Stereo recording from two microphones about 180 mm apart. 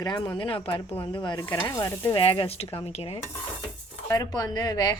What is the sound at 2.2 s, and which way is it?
Speech, 30° left (ahead or behind).